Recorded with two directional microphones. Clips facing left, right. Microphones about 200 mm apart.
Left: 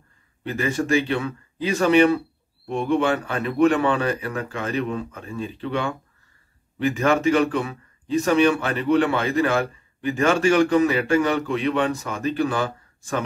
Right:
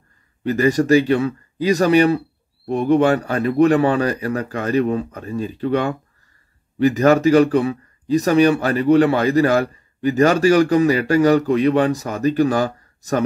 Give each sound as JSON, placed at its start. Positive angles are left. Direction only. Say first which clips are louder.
{"t": 0.5, "sound": "speech", "louder": "right 8 dB", "side_deg": -40}